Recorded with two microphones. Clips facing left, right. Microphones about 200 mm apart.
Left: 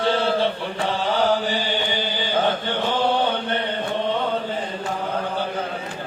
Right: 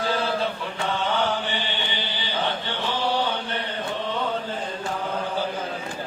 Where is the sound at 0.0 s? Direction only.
30° left (ahead or behind); by 3.6 s 55° left (ahead or behind).